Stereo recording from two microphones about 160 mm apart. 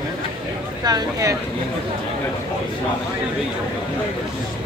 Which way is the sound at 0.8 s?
20° right (ahead or behind).